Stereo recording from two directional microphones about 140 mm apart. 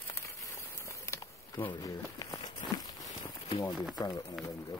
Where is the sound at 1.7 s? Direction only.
25° left (ahead or behind).